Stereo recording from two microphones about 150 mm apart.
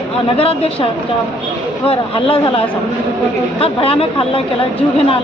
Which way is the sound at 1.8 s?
35° left (ahead or behind).